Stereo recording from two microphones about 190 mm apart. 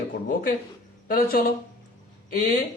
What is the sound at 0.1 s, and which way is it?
A man's voice, 45° left (ahead or behind).